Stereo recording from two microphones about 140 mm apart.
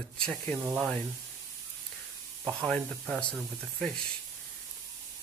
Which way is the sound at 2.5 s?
5° left (ahead or behind).